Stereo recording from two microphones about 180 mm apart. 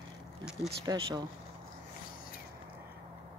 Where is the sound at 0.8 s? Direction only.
20° right (ahead or behind).